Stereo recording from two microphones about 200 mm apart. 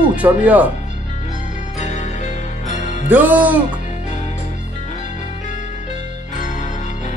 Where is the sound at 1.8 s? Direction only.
35° left (ahead or behind).